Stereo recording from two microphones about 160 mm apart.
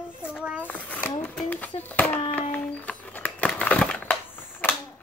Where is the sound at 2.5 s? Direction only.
10° left (ahead or behind).